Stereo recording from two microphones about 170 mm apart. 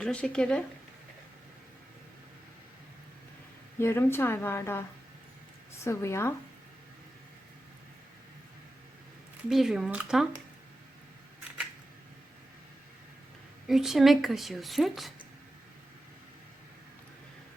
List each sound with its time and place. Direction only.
0.0 s speech: 5° left (ahead or behind)
3.8 s a woman's voice: 15° left (ahead or behind)
9.5 s speech: centre (ahead or behind)
13.7 s speech: centre (ahead or behind)